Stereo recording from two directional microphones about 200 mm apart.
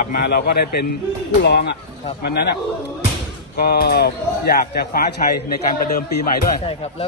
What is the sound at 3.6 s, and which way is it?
Speech, 50° left (ahead or behind).